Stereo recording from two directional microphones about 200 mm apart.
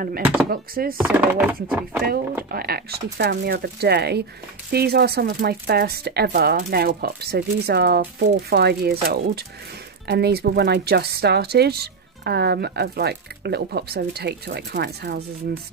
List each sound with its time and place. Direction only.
0.2 s speech: 5° right (ahead or behind)
0.5 s speech: 50° right (ahead or behind)
1.0 s speech: 10° right (ahead or behind)
2.5 s speech: 50° right (ahead or behind)